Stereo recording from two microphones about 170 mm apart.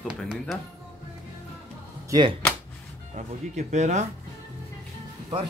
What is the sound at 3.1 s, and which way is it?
Speech, 45° right (ahead or behind).